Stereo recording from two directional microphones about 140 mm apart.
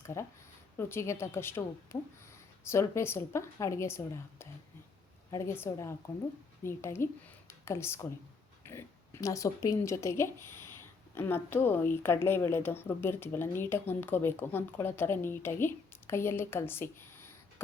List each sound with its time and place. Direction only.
0.0 s a woman's voice: 20° left (ahead or behind)